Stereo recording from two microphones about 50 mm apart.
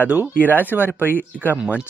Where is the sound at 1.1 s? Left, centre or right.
Left.